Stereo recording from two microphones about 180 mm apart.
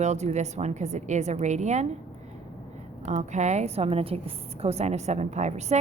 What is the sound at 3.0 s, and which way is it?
A woman's voice, 40° right (ahead or behind).